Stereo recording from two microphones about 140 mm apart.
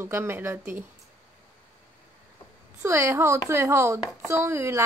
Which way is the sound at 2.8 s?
20° right (ahead or behind).